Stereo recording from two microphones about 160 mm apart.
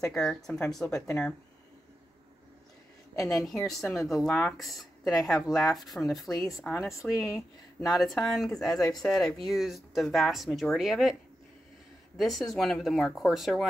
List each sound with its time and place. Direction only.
0.0 s speech: 5° left (ahead or behind)
0.9 s speech: 20° left (ahead or behind)
3.3 s speech: centre (ahead or behind)
12.2 s speech: centre (ahead or behind)